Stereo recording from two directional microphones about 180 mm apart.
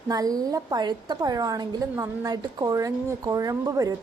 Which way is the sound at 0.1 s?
20° right (ahead or behind).